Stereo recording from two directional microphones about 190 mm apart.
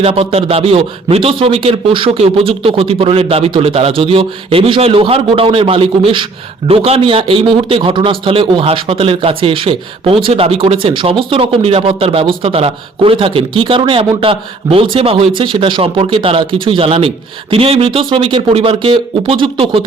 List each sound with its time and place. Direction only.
0.0 s a man's voice: 30° right (ahead or behind)